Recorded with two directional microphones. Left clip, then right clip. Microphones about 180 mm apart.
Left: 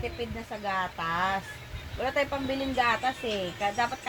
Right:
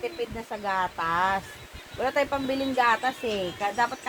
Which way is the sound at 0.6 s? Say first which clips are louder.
Right 3 dB; 15° right (ahead or behind).